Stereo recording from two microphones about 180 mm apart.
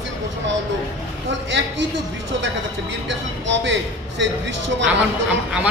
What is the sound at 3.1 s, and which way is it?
Speech, 85° right.